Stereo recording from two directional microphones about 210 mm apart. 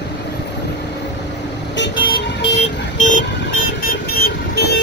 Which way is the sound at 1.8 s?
55° left (ahead or behind).